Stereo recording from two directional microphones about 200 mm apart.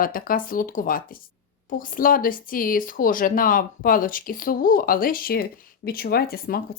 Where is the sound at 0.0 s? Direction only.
45° left (ahead or behind).